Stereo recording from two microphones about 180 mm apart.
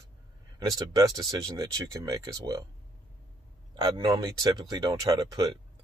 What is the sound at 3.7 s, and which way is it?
Speech, 25° right (ahead or behind).